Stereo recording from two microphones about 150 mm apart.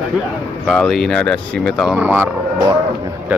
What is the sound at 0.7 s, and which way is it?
Speech, centre (ahead or behind).